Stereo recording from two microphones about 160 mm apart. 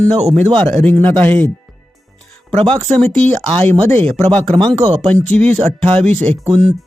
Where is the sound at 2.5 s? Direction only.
35° right (ahead or behind).